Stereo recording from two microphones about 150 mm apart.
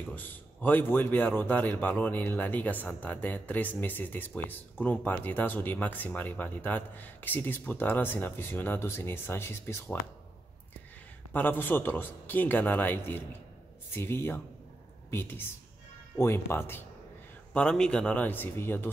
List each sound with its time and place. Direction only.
0.1 s a man's voice: 10° left (ahead or behind)
11.3 s a man's voice: 10° left (ahead or behind)